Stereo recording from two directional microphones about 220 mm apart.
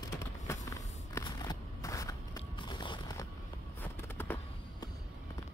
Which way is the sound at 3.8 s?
10° left (ahead or behind).